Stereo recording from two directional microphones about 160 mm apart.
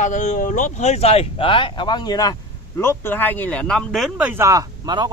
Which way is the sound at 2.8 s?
15° left (ahead or behind).